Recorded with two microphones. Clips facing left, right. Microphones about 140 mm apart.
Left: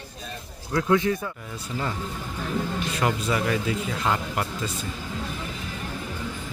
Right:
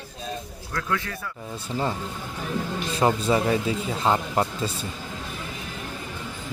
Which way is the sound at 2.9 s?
30° right (ahead or behind).